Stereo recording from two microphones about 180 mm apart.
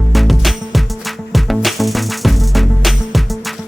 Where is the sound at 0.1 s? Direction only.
Centre (ahead or behind).